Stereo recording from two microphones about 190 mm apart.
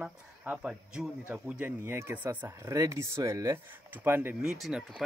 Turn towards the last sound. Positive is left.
turn(degrees=0)  # may be behind; listen again after turning